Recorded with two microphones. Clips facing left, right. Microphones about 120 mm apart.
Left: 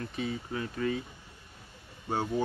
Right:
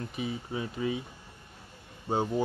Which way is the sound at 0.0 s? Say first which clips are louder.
Even; 15° right (ahead or behind).